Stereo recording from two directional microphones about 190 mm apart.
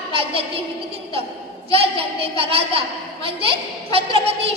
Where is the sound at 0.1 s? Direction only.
30° right (ahead or behind).